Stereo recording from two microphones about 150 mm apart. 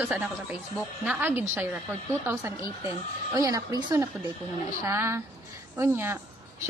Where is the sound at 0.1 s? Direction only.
5° right (ahead or behind).